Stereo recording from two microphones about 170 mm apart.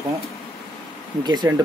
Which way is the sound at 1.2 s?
25° right (ahead or behind).